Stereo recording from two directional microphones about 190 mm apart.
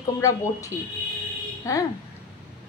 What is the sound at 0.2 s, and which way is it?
A woman's voice, 15° left (ahead or behind).